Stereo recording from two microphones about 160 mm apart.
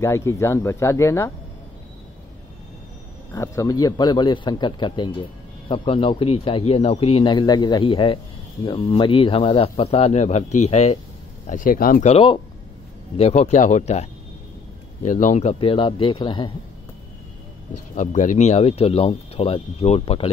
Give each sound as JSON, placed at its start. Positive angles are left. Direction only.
{"t": 0.0, "sound": "speech", "side_deg": 20}
{"t": 3.3, "sound": "a man's voice", "side_deg": 20}
{"t": 11.4, "sound": "speech", "side_deg": 55}
{"t": 12.1, "sound": "a man's voice", "side_deg": 35}
{"t": 13.2, "sound": "speech", "side_deg": 45}
{"t": 15.0, "sound": "a man's voice", "side_deg": 50}
{"t": 17.9, "sound": "a man's voice", "side_deg": 50}